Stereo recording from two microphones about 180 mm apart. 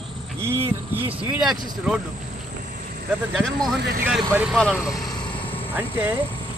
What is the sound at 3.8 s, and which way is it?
Speech, 60° right (ahead or behind).